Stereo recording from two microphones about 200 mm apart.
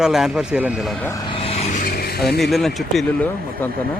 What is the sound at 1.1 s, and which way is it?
Vehicle, 20° left (ahead or behind).